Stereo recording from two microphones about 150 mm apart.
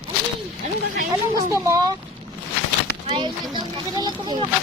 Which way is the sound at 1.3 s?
20° right (ahead or behind).